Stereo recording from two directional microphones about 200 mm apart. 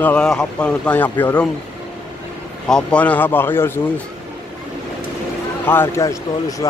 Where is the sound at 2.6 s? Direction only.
5° left (ahead or behind).